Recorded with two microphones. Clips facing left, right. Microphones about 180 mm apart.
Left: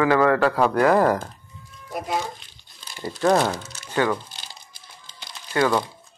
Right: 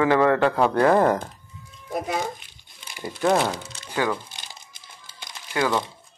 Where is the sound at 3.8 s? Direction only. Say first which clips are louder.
Left 2 dB; 10° right (ahead or behind).